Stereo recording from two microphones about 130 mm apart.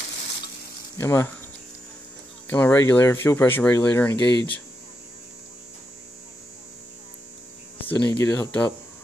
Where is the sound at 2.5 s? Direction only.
15° left (ahead or behind).